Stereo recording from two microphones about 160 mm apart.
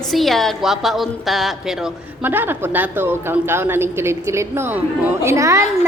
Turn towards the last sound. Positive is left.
turn(degrees=-20)  # may be behind; listen again after turning